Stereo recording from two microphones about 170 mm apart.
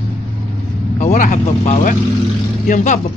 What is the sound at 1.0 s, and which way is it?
A woman's voice, 45° left (ahead or behind).